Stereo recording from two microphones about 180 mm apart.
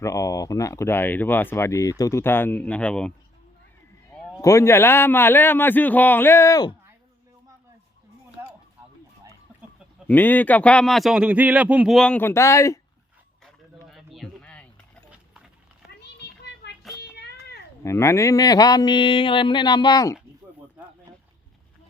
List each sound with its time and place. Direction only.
0.0 s speech: 20° left (ahead or behind)
4.1 s speech: 15° left (ahead or behind)
10.1 s speech: 10° left (ahead or behind)
13.8 s a sound: centre (ahead or behind)
16.0 s children playing: 70° left (ahead or behind)
17.8 s speech: 15° left (ahead or behind)